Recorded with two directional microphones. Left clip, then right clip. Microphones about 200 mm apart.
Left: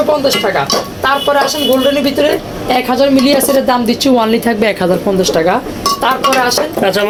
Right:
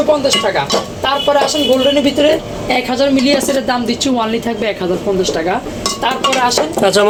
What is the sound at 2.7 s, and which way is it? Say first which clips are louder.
A woman's voice: left 3 dB; 20° left (ahead or behind).